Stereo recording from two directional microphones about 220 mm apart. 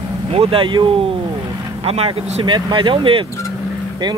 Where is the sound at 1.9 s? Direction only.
25° right (ahead or behind).